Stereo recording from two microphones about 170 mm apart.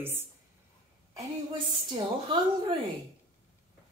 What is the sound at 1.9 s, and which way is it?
Speech, 35° right (ahead or behind).